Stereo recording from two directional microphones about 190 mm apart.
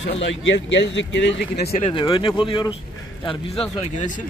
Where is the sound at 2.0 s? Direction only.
25° left (ahead or behind).